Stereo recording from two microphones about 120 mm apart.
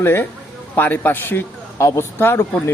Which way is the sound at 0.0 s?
20° left (ahead or behind).